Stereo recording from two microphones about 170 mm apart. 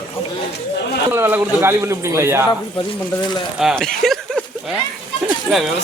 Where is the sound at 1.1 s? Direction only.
15° right (ahead or behind).